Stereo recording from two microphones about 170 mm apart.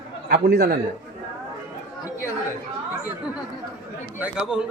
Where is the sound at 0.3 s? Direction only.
65° right (ahead or behind).